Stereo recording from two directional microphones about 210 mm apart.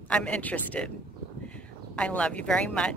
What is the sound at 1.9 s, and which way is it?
Speech, 5° left (ahead or behind).